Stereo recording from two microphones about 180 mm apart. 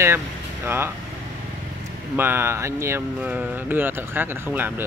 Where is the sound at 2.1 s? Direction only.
10° right (ahead or behind).